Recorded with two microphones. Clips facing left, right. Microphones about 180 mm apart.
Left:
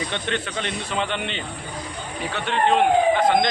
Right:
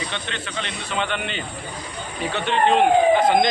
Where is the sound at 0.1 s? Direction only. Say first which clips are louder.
Left 4 dB; 50° left (ahead or behind).